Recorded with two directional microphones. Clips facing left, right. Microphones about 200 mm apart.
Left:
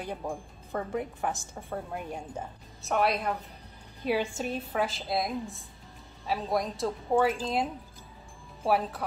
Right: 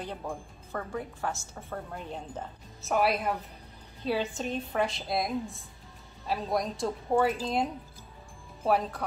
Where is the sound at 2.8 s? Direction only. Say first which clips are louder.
Even; centre (ahead or behind).